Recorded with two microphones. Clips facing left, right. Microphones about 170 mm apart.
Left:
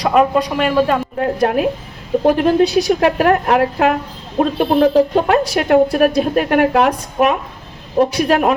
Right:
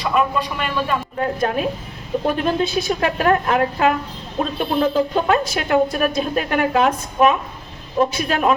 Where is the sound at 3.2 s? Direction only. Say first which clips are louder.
Left 4 dB; 55° left (ahead or behind).